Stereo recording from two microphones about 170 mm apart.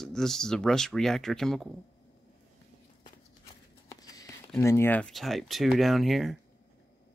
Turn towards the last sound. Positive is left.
turn(degrees=0)  # may be behind; listen again after turning